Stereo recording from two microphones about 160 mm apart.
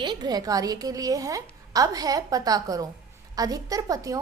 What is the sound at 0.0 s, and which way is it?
A woman's voice, 30° right (ahead or behind).